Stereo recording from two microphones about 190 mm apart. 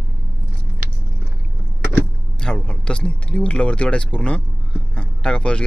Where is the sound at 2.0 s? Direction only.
5° left (ahead or behind).